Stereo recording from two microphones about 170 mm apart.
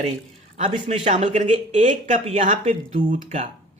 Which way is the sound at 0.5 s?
40° right (ahead or behind).